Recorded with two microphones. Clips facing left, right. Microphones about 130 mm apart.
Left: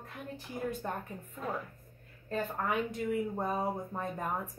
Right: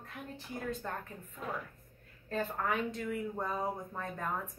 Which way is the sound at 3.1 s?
25° left (ahead or behind).